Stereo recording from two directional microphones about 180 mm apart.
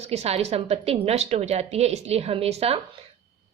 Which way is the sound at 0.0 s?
35° right (ahead or behind).